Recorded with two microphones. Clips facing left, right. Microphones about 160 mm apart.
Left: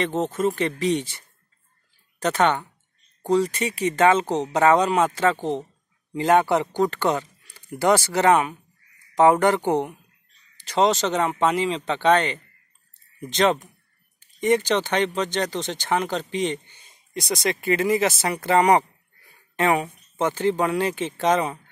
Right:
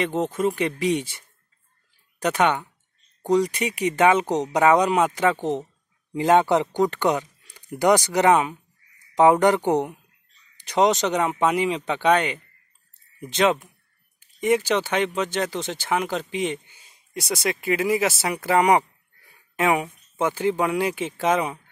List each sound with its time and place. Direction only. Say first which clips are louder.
0.0 s speech: even; 10° right (ahead or behind)